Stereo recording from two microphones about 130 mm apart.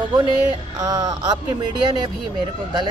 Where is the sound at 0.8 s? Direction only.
25° right (ahead or behind).